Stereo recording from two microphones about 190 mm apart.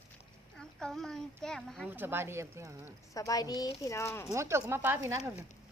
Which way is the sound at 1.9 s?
10° right (ahead or behind).